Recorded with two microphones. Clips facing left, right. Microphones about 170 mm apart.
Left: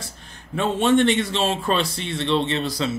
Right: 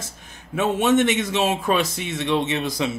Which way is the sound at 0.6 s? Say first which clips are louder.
Even; 10° right (ahead or behind).